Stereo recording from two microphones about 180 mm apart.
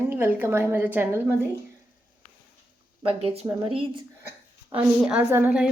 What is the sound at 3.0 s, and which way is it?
Speech, 30° right (ahead or behind).